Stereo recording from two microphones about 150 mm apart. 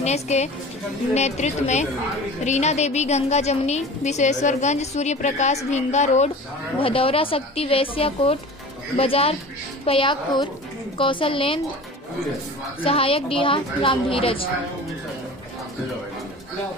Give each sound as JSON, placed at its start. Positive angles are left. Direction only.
{"t": 0.0, "sound": "a woman's voice", "side_deg": 50}
{"t": 6.8, "sound": "a woman's voice", "side_deg": 35}
{"t": 12.8, "sound": "a woman's voice", "side_deg": 40}